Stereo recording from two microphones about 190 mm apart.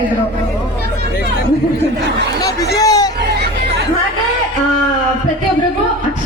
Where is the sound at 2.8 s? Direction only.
20° left (ahead or behind).